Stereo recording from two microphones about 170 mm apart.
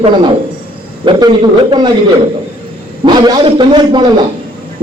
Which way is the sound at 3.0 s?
25° right (ahead or behind).